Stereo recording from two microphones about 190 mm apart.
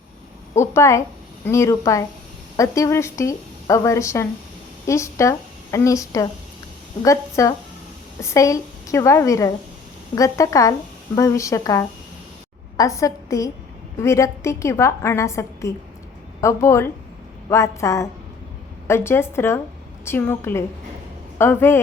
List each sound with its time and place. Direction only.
0.5 s a woman's voice: 15° left (ahead or behind)